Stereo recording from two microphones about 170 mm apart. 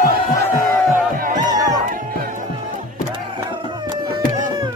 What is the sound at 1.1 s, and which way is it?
Music, 55° right (ahead or behind).